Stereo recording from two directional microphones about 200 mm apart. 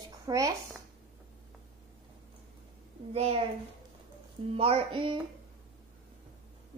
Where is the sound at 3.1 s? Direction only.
30° right (ahead or behind).